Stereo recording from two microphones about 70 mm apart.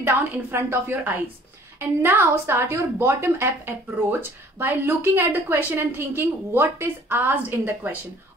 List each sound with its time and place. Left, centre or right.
0.0 s a woman's voice: right